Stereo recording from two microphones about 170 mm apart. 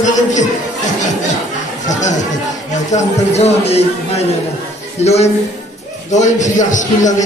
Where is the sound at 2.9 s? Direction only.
45° left (ahead or behind).